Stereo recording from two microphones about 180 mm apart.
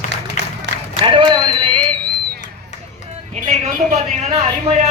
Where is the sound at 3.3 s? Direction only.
40° right (ahead or behind).